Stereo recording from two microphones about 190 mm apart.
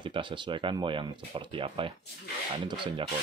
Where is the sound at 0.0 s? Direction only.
25° right (ahead or behind).